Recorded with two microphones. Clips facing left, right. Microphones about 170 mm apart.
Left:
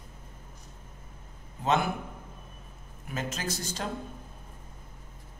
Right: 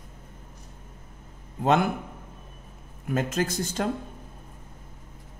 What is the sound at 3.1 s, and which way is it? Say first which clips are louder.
Speech: right 8 dB; 55° right (ahead or behind).